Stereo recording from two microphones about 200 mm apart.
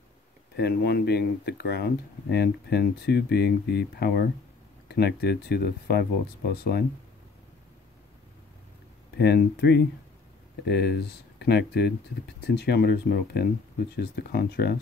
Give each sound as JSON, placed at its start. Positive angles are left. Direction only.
{"t": 0.6, "sound": "speech", "side_deg": 55}
{"t": 9.2, "sound": "speech", "side_deg": 55}